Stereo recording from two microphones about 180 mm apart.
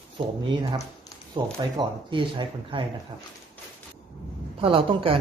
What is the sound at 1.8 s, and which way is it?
Speech, 25° right (ahead or behind).